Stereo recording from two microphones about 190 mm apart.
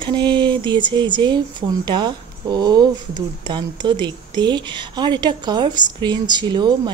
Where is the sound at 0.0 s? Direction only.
25° right (ahead or behind).